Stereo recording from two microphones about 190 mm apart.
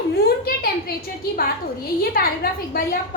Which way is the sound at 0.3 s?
55° left (ahead or behind).